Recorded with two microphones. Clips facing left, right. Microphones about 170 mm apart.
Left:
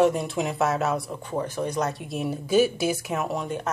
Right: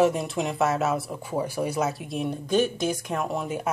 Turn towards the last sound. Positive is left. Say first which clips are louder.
# even
turn(degrees=-5)  # may be behind; listen again after turning